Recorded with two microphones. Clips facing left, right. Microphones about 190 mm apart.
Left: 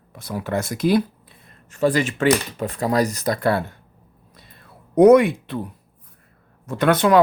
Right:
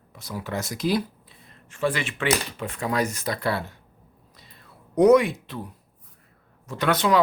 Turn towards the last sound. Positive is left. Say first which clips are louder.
# left 5 dB
turn(degrees=55)  # may be behind; listen again after turning